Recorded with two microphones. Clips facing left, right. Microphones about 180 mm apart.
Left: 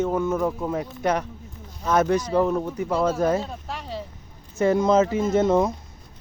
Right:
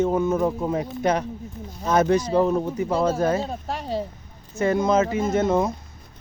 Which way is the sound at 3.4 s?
40° right (ahead or behind).